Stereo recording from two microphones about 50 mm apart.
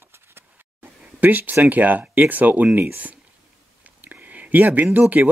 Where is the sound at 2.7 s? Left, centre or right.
Right.